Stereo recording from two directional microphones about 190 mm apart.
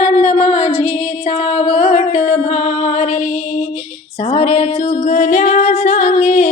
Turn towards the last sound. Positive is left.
turn(degrees=40)  # may be behind; listen again after turning